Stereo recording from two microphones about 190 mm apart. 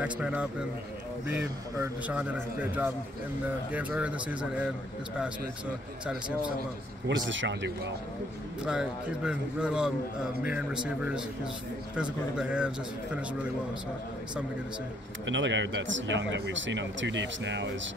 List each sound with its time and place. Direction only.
0.0 s a man's voice: 5° right (ahead or behind)
7.1 s speech: 75° right (ahead or behind)
8.6 s speech: 5° right (ahead or behind)
12.0 s speech: 5° right (ahead or behind)
15.2 s speech: 75° right (ahead or behind)